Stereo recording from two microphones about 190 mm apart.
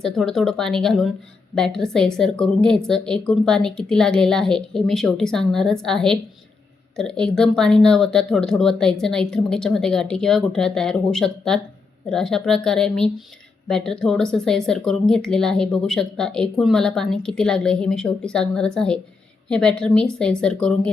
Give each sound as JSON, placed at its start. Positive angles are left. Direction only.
{"t": 0.0, "sound": "speech", "side_deg": 0}